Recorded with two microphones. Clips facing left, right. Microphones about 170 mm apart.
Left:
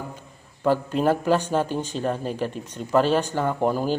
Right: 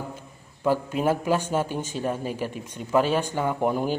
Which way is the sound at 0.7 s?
10° right (ahead or behind).